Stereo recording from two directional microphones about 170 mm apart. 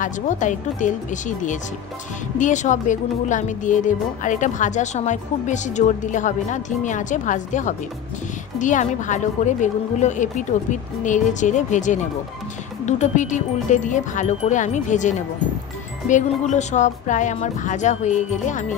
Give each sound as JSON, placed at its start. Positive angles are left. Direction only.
{"t": 0.0, "sound": "a woman's voice", "side_deg": 45}